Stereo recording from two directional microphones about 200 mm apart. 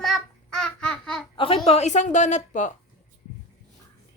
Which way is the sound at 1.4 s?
25° left (ahead or behind).